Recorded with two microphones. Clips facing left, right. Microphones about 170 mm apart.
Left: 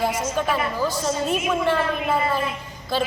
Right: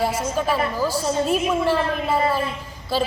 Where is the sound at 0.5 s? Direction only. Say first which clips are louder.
Right 2 dB; 5° right (ahead or behind).